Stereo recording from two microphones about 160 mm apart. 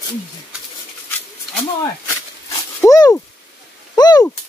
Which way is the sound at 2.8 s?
20° left (ahead or behind).